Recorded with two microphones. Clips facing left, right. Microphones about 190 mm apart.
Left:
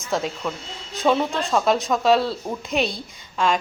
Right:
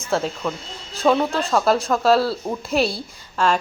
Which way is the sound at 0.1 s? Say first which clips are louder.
Right 2 dB; centre (ahead or behind).